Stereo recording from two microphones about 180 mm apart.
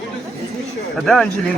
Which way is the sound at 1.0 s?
Centre (ahead or behind).